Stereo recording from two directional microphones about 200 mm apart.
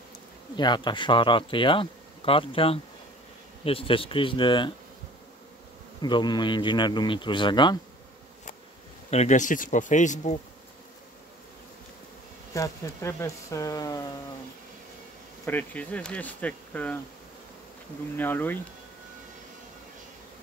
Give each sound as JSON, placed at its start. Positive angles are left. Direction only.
{"t": 0.6, "sound": "speech", "side_deg": 20}
{"t": 5.9, "sound": "speech", "side_deg": 20}
{"t": 9.1, "sound": "speech", "side_deg": 35}
{"t": 12.5, "sound": "speech", "side_deg": 15}
{"t": 15.4, "sound": "speech", "side_deg": 10}
{"t": 18.1, "sound": "speech", "side_deg": 10}